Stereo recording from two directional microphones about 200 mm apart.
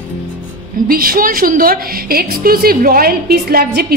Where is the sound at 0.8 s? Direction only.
45° right (ahead or behind).